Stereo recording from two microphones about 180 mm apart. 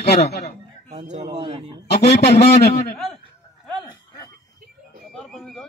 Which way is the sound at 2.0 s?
65° left (ahead or behind).